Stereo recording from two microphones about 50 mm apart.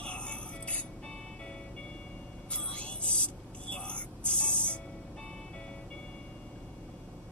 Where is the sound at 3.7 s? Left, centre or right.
Left.